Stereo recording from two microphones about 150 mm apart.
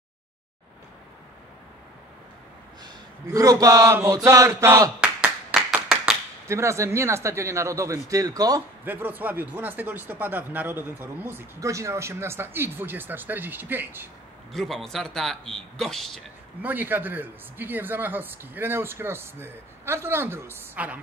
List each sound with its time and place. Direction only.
3.3 s a sound: 25° right (ahead or behind)
5.0 s clapping: 5° right (ahead or behind)
6.4 s a sound: 20° right (ahead or behind)
8.8 s speech: 15° right (ahead or behind)
14.5 s a man's voice: centre (ahead or behind)
16.6 s speech: 10° right (ahead or behind)